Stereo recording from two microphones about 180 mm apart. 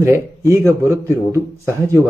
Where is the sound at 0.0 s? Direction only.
15° right (ahead or behind).